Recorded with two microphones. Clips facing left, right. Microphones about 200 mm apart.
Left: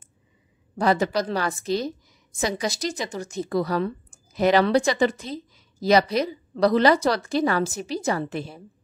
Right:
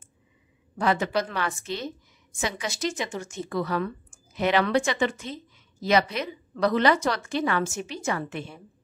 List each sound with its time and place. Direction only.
0.7 s a woman's voice: 35° left (ahead or behind)